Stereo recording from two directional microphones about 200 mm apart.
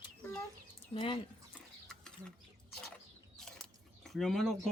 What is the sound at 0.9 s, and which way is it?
Speech, 25° left (ahead or behind).